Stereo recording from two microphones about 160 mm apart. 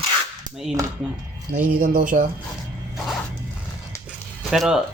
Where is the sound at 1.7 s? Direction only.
55° right (ahead or behind).